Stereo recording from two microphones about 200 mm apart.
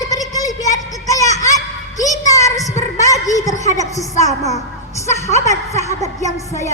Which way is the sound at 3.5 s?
40° left (ahead or behind).